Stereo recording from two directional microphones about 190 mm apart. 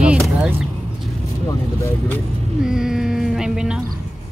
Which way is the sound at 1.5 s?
10° left (ahead or behind).